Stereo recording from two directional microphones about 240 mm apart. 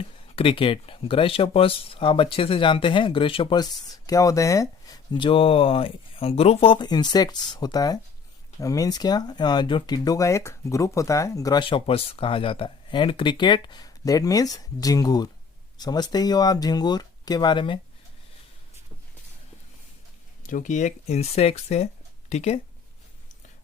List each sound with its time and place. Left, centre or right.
0.3 s speech: left
20.5 s speech: left